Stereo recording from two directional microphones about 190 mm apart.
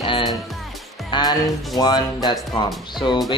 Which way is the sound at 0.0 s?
25° left (ahead or behind).